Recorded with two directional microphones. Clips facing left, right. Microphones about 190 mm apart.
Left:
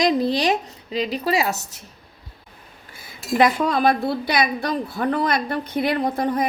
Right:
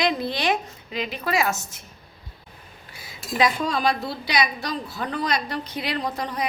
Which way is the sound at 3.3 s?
55° left (ahead or behind).